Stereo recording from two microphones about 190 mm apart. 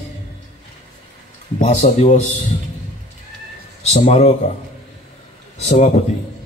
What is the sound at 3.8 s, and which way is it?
Speech, 35° left (ahead or behind).